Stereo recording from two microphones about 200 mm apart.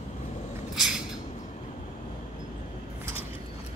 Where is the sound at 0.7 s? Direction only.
Centre (ahead or behind).